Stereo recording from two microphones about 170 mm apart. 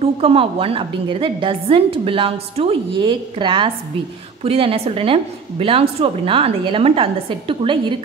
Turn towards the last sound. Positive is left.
turn(degrees=-30)  # may be behind; listen again after turning